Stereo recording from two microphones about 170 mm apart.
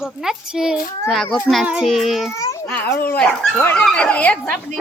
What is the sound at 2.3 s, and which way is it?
Babbling, 20° left (ahead or behind).